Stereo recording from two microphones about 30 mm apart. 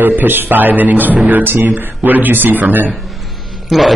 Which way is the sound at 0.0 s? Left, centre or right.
Right.